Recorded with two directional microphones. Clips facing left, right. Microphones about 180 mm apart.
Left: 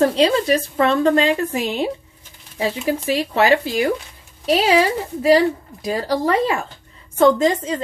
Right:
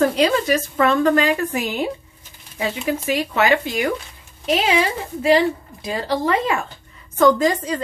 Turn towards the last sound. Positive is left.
turn(degrees=25)  # may be behind; listen again after turning